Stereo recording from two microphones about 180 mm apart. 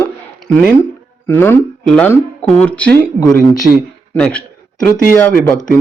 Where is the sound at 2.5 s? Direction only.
5° left (ahead or behind).